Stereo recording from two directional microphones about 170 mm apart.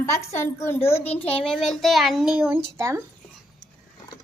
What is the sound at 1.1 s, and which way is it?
Speech, 35° left (ahead or behind).